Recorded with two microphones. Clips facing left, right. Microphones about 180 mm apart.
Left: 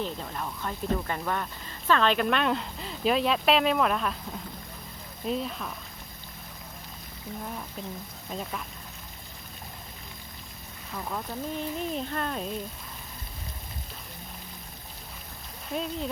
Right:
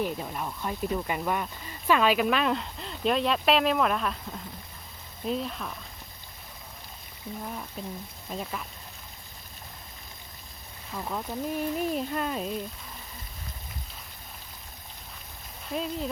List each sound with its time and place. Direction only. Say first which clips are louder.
0.0 s speech: right 2 dB; 10° right (ahead or behind)
7.3 s speech: right 1 dB; 25° right (ahead or behind)
8.3 s speech: even; centre (ahead or behind)
10.9 s speech: right 1 dB; 5° right (ahead or behind)
15.7 s speech: even; centre (ahead or behind)